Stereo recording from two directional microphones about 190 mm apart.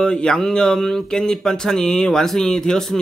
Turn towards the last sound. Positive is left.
turn(degrees=5)  # may be behind; listen again after turning